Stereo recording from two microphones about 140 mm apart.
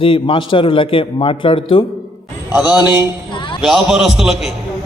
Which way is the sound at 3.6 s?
Centre (ahead or behind).